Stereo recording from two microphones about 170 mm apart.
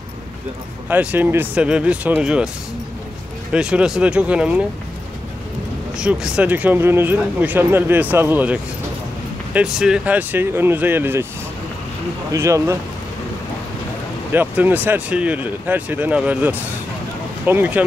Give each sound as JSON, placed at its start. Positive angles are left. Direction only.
{"t": 0.8, "sound": "speech", "side_deg": -10}
{"t": 3.5, "sound": "speech", "side_deg": -5}
{"t": 5.9, "sound": "speech", "side_deg": -5}
{"t": 12.3, "sound": "speech", "side_deg": -20}
{"t": 14.3, "sound": "speech", "side_deg": -10}